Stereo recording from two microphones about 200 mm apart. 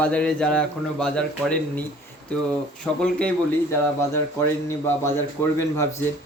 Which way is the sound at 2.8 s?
5° left (ahead or behind).